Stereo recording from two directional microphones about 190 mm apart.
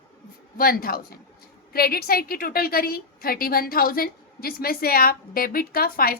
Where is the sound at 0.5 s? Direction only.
50° left (ahead or behind).